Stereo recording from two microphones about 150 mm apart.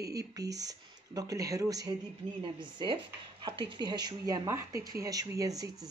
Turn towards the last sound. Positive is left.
turn(degrees=-25)  # may be behind; listen again after turning